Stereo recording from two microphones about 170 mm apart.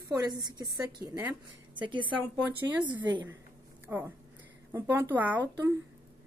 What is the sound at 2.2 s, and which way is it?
A woman's voice, 10° right (ahead or behind).